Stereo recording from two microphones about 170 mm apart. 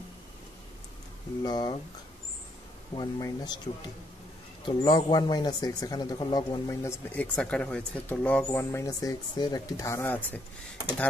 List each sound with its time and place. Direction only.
1.4 s speech: 25° left (ahead or behind)
3.0 s speech: 25° left (ahead or behind)
4.6 s speech: 25° left (ahead or behind)
7.3 s speech: 5° left (ahead or behind)